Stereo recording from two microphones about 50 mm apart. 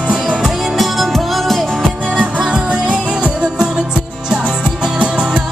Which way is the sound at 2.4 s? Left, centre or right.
Centre.